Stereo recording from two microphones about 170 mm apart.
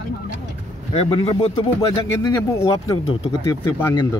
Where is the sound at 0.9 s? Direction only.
35° left (ahead or behind).